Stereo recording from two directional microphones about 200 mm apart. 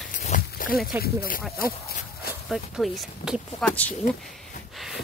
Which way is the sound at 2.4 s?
Centre (ahead or behind).